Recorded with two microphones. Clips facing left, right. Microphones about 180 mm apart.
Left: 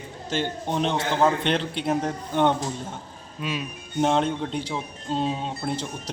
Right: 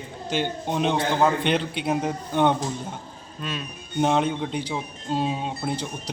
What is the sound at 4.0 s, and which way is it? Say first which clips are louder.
Speech: even; 5° right (ahead or behind).